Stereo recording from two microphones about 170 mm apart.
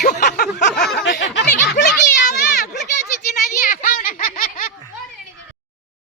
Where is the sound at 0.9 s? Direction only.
90° left.